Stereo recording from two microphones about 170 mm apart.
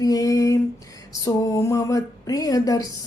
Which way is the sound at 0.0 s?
20° left (ahead or behind).